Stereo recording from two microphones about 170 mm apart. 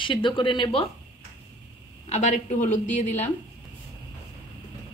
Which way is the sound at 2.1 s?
45° left (ahead or behind).